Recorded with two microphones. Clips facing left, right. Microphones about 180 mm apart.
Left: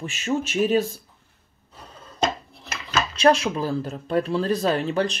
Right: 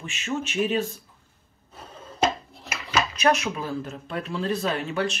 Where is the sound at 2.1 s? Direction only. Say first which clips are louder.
Even; 10° right (ahead or behind).